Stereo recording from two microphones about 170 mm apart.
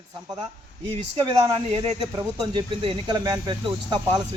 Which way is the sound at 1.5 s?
35° right (ahead or behind).